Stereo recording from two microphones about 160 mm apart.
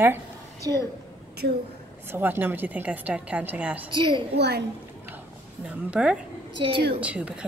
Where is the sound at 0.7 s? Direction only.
25° right (ahead or behind).